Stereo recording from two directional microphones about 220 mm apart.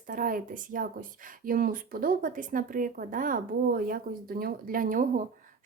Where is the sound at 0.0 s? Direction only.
40° right (ahead or behind).